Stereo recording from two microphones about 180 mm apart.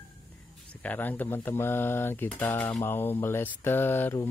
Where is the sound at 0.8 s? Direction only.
10° left (ahead or behind).